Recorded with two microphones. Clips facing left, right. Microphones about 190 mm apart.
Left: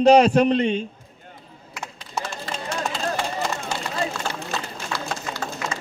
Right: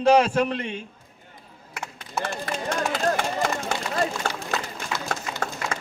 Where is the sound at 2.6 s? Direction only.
60° right (ahead or behind).